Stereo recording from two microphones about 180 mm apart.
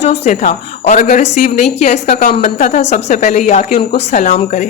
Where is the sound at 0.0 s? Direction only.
40° left (ahead or behind).